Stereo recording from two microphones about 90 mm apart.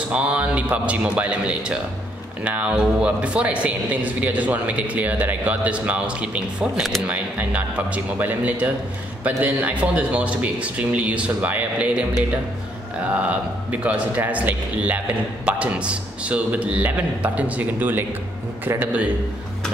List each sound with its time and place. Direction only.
0.1 s speech: 10° right (ahead or behind)
13.1 s a man's voice: 15° right (ahead or behind)